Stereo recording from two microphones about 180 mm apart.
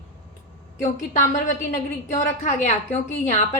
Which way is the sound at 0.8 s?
45° left (ahead or behind).